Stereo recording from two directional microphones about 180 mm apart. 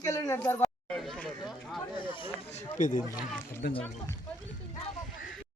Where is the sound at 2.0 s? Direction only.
25° left (ahead or behind).